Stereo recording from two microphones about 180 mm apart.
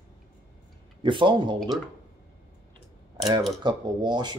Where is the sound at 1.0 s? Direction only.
30° right (ahead or behind).